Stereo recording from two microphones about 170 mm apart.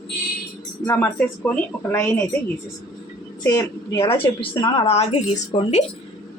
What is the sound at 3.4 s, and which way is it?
A woman's voice, 20° left (ahead or behind).